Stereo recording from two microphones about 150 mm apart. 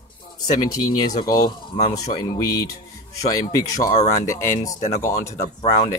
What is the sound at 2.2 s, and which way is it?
Speech, 25° left (ahead or behind).